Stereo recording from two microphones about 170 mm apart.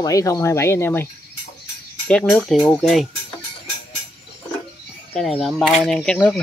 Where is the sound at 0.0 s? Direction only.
20° left (ahead or behind).